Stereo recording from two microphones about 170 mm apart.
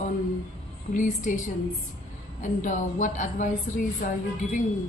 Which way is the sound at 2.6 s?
45° left (ahead or behind).